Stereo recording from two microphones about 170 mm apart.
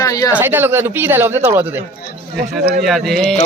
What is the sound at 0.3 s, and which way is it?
Speech, 10° right (ahead or behind).